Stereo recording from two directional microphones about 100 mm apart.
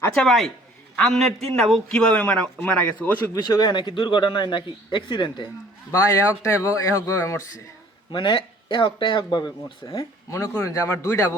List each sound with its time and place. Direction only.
0.1 s a man's voice: 5° left (ahead or behind)
3.3 s speech: 40° left (ahead or behind)
5.9 s speech: 35° left (ahead or behind)
8.1 s speech: 55° left (ahead or behind)
10.0 s speech: 30° left (ahead or behind)